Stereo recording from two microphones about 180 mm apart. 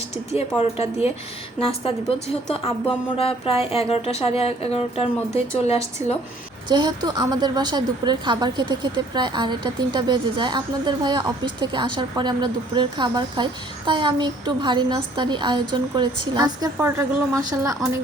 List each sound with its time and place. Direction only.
0.3 s speech: 35° left (ahead or behind)
3.2 s speech: 35° left (ahead or behind)
6.7 s a woman's voice: 25° right (ahead or behind)